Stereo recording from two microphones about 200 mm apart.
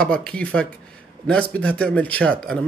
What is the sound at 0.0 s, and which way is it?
A man's voice, 5° left (ahead or behind).